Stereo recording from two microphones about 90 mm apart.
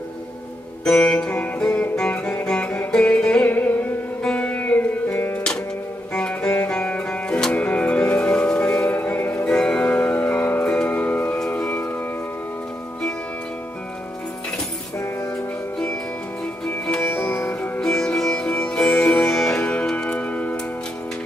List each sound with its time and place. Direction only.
0.8 s music: 10° left (ahead or behind); by 12.0 s 25° left (ahead or behind)
16.6 s music: 10° left (ahead or behind)
17.1 s sitar: 15° left (ahead or behind)
17.5 s music: 10° left (ahead or behind)
19.6 s tick-tock: 10° left (ahead or behind)